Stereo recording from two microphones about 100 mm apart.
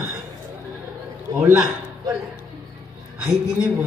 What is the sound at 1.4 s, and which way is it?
Speech, 25° right (ahead or behind).